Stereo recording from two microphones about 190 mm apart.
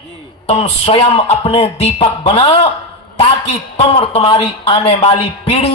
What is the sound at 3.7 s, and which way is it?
A man's voice, 30° left (ahead or behind).